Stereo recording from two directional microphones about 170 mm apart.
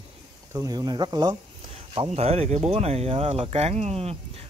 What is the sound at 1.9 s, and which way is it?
Speech, 35° right (ahead or behind).